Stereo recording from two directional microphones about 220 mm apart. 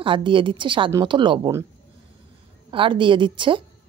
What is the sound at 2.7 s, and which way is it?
Speech, 25° right (ahead or behind).